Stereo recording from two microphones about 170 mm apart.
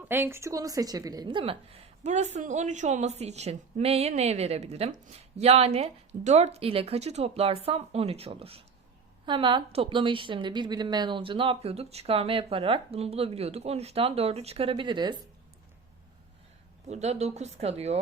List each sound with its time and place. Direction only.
0.1 s a woman's voice: 15° right (ahead or behind)
16.9 s a woman's voice: 40° right (ahead or behind)